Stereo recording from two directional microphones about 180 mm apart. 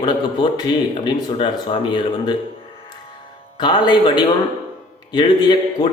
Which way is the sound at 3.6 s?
25° left (ahead or behind).